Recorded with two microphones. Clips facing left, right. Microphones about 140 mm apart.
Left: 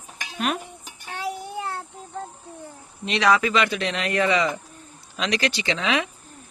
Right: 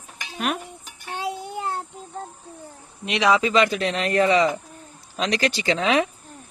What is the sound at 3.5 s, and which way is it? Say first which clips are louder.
A man's voice: right 3 dB; 35° right (ahead or behind).